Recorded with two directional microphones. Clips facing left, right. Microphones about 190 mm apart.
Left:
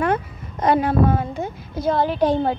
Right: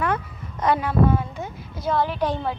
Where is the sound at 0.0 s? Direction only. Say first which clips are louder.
Left 4 dB; 30° left (ahead or behind).